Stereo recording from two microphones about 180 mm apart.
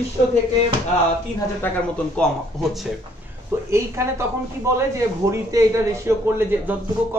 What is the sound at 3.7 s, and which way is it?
Speech, 15° right (ahead or behind).